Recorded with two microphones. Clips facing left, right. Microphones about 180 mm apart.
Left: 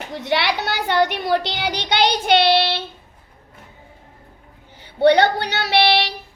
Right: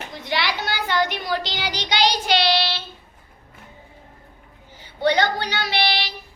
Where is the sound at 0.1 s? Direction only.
65° left (ahead or behind).